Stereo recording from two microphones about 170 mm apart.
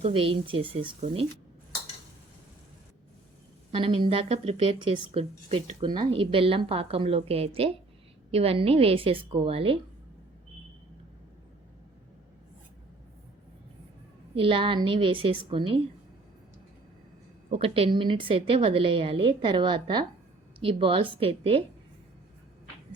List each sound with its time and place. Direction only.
0.0 s a woman's voice: 30° right (ahead or behind)
3.7 s a woman's voice: 30° right (ahead or behind)
14.3 s a woman's voice: 30° right (ahead or behind)
17.5 s a woman's voice: 35° right (ahead or behind)